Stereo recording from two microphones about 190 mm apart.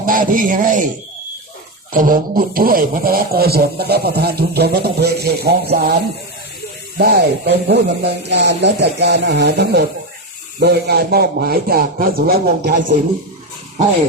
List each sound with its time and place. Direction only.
0.0 s speech: 45° right (ahead or behind)
1.9 s a man's voice: 45° right (ahead or behind)
7.0 s a man's voice: 55° right (ahead or behind)